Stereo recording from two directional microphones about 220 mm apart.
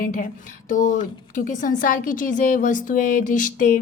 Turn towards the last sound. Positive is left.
turn(degrees=35)  # may be behind; listen again after turning